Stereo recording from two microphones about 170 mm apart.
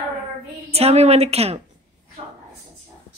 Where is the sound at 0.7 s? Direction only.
35° right (ahead or behind).